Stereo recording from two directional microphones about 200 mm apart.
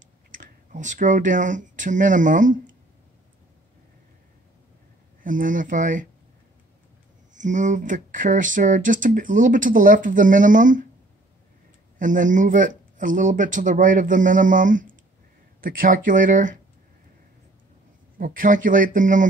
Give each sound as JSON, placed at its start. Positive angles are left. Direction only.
{"t": 0.7, "sound": "speech", "side_deg": -40}
{"t": 5.2, "sound": "speech", "side_deg": -40}
{"t": 7.3, "sound": "speech", "side_deg": -40}
{"t": 12.0, "sound": "speech", "side_deg": -40}
{"t": 18.1, "sound": "speech", "side_deg": -45}